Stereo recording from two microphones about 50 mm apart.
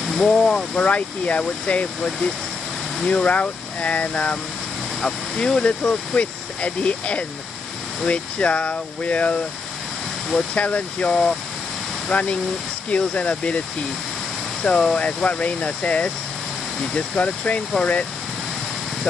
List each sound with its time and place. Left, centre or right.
0.1 s speech: centre
0.7 s speech: left
5.0 s speech: centre
5.6 s speech: left
10.5 s speech: left
14.6 s speech: left